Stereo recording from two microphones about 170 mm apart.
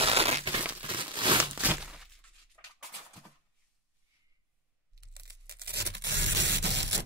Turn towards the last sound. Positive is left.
turn(degrees=-90)